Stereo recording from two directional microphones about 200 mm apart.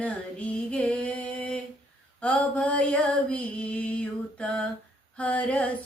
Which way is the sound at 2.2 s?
5° left (ahead or behind).